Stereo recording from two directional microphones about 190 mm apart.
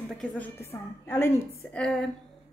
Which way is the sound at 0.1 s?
5° left (ahead or behind).